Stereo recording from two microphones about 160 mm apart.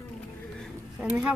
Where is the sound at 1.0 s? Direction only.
5° right (ahead or behind).